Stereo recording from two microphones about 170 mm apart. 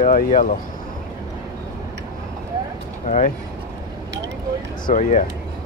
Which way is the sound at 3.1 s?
45° left (ahead or behind).